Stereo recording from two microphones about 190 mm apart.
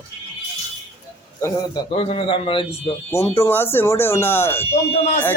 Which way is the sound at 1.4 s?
20° left (ahead or behind).